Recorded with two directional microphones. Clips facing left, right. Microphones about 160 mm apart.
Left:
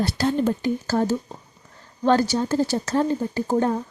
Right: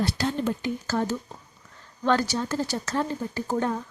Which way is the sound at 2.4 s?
30° left (ahead or behind).